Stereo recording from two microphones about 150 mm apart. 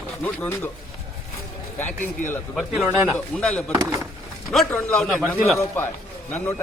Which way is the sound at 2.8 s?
15° right (ahead or behind).